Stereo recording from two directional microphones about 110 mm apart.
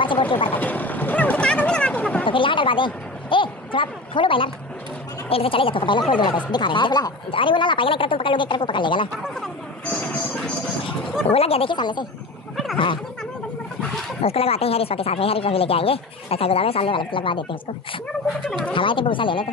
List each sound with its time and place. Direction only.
0.0 s speech: 50° left (ahead or behind)
0.6 s vehicle: 15° left (ahead or behind)
2.2 s a woman's voice: 50° left (ahead or behind)
9.8 s a sound: 10° left (ahead or behind)
11.3 s speech: 65° left (ahead or behind)
11.7 s a woman's voice: 40° left (ahead or behind)
14.2 s speech: 65° left (ahead or behind)
18.7 s a woman's voice: 50° left (ahead or behind)